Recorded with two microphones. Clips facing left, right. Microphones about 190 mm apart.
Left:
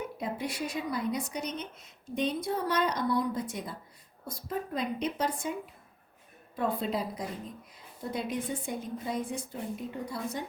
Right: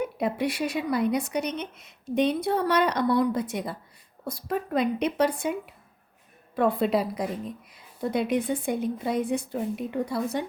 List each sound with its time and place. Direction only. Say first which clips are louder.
0.2 s speech: right 7 dB; 75° right (ahead or behind)
6.6 s speech: right 7 dB; 70° right (ahead or behind)